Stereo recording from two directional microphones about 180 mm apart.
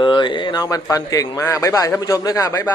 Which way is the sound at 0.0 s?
25° left (ahead or behind).